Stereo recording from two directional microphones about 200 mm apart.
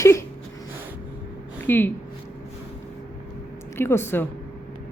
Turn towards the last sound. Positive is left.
turn(degrees=10)  # may be behind; listen again after turning